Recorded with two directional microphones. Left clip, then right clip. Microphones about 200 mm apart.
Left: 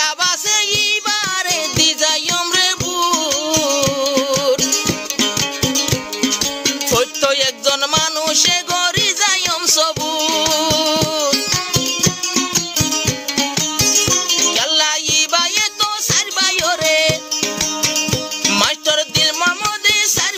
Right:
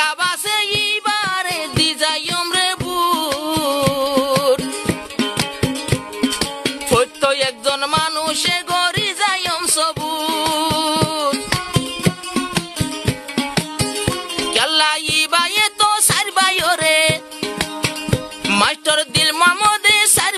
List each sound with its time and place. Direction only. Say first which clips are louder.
0.0 s music: left 1 dB; centre (ahead or behind)
5.2 s music: left 3 dB; 50° left (ahead or behind)
6.9 s music: right 1 dB; centre (ahead or behind)
13.7 s music: left 6 dB; 55° left (ahead or behind)
14.5 s music: right 5 dB; 10° right (ahead or behind)
18.5 s music: right 1 dB; 5° right (ahead or behind)